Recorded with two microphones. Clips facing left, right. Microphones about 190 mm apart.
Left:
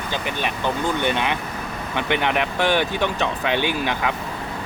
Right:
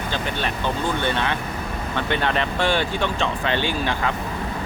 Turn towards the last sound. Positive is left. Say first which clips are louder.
# left 1 dB
turn(degrees=15)  # may be behind; listen again after turning